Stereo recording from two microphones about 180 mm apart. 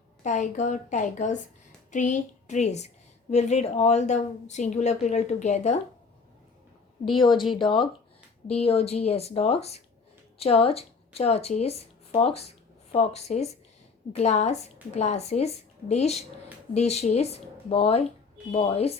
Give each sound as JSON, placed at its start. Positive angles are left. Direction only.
{"t": 0.2, "sound": "a woman's voice", "side_deg": 45}
{"t": 7.2, "sound": "a woman's voice", "side_deg": 25}